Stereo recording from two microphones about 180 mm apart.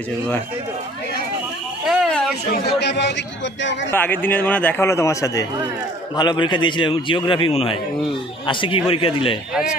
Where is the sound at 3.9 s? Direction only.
10° left (ahead or behind); by 9.4 s 30° left (ahead or behind).